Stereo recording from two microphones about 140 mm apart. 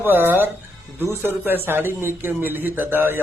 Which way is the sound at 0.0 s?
15° right (ahead or behind).